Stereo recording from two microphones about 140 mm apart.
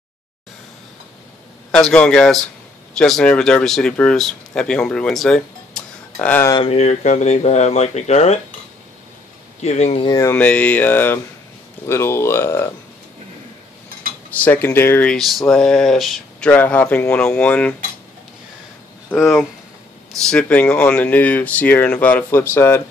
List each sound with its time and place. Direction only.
1.8 s speech: 5° left (ahead or behind)
6.1 s speech: 15° left (ahead or behind)
6.7 s speech: 50° left (ahead or behind)
9.6 s speech: 50° left (ahead or behind)
10.0 s speech: 25° left (ahead or behind)
10.3 s speech: 10° left (ahead or behind)
14.3 s speech: 10° left (ahead or behind)
15.1 s speech: centre (ahead or behind)
19.0 s speech: 15° left (ahead or behind)